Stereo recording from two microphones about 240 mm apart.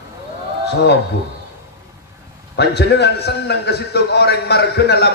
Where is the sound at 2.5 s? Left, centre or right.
Left.